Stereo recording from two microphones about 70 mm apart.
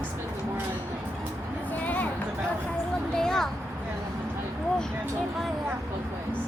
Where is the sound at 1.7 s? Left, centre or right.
Left.